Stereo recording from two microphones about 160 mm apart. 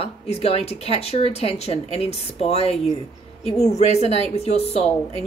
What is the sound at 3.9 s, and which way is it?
Speech, 40° left (ahead or behind).